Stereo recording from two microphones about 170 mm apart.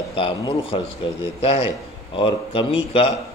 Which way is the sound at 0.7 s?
35° left (ahead or behind).